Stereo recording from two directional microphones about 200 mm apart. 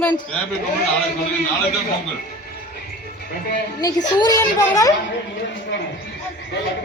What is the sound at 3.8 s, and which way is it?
A woman's voice, 20° left (ahead or behind).